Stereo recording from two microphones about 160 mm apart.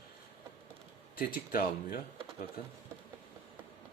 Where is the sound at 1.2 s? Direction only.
65° left (ahead or behind).